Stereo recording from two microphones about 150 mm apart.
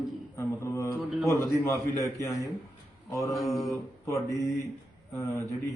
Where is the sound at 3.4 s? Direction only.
25° left (ahead or behind).